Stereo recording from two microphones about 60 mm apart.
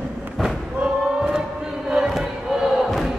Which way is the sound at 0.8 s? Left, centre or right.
Centre.